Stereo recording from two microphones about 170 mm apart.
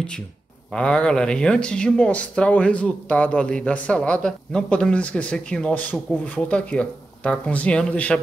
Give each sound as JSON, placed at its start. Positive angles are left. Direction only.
{"t": 0.7, "sound": "speech", "side_deg": 5}